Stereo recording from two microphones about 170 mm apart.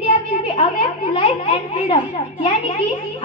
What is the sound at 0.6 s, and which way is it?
A woman's voice, 35° left (ahead or behind).